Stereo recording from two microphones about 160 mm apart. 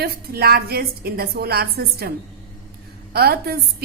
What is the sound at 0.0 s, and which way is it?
A woman's voice, 75° right (ahead or behind).